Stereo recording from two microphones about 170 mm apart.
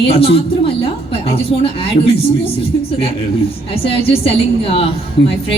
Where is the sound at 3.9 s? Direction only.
35° left (ahead or behind).